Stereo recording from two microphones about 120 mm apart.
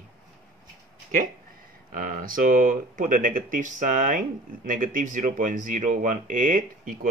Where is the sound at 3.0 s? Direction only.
90° right.